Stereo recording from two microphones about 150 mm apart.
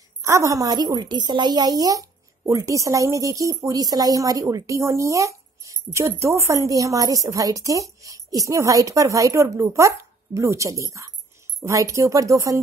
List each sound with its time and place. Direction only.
0.2 s a woman's voice: 20° right (ahead or behind)